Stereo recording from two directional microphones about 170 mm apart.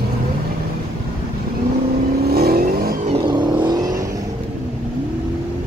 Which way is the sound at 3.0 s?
25° right (ahead or behind).